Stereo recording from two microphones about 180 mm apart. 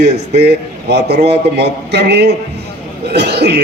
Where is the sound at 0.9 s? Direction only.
65° right (ahead or behind).